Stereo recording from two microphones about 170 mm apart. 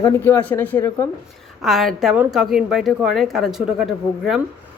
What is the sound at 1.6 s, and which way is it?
A woman's voice, centre (ahead or behind).